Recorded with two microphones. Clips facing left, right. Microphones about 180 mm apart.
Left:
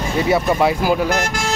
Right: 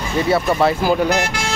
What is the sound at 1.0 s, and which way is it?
Speech, 45° left (ahead or behind).